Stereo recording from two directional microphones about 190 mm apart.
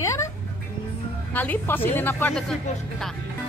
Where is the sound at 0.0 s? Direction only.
15° left (ahead or behind).